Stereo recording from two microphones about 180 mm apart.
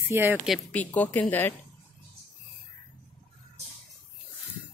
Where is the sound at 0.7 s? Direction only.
10° left (ahead or behind).